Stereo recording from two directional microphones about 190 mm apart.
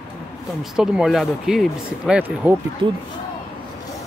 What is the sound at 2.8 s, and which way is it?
Speech, 25° right (ahead or behind).